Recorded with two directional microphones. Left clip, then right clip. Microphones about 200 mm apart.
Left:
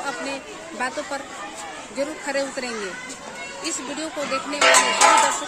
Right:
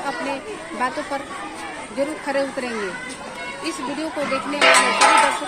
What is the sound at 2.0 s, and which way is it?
Speech, 5° left (ahead or behind).